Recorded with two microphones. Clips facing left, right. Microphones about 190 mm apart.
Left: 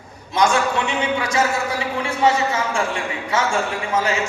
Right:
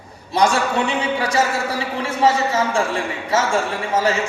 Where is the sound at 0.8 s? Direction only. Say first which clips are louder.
Right 1 dB; 35° right (ahead or behind).